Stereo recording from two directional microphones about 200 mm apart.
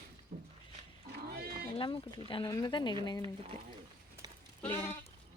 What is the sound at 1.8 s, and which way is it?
A woman's voice, 25° left (ahead or behind).